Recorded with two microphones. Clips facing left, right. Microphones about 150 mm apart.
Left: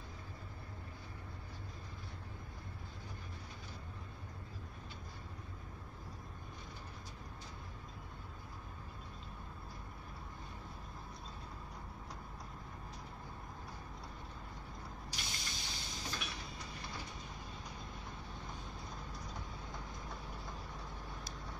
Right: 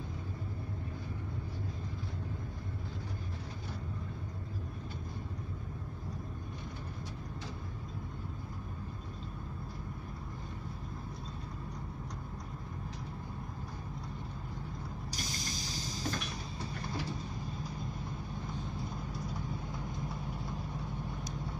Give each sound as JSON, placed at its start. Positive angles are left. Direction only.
{"t": 15.0, "sound": "vehicle", "side_deg": -40}